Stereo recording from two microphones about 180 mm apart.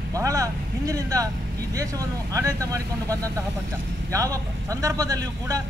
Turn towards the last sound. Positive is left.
turn(degrees=-20)  # may be behind; listen again after turning